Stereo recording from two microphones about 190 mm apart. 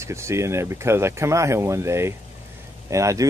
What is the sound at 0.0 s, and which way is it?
A man's voice, 15° right (ahead or behind).